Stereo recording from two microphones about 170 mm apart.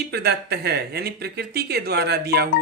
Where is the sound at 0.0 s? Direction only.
70° right (ahead or behind).